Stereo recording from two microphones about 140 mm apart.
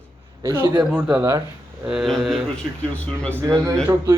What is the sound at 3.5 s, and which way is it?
Speech, 20° right (ahead or behind).